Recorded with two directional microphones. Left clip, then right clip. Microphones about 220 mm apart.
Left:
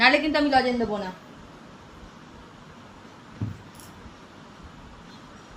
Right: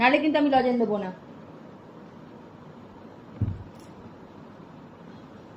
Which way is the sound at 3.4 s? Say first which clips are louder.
Right 1 dB; 45° left (ahead or behind).